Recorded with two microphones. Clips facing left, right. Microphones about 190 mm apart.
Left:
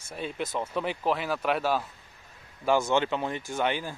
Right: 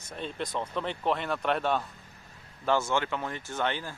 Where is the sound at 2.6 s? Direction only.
15° left (ahead or behind).